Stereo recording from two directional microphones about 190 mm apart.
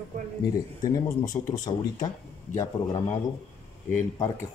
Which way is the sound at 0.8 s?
15° left (ahead or behind).